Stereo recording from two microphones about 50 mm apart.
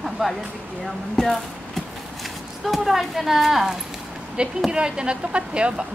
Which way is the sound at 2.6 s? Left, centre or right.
Centre.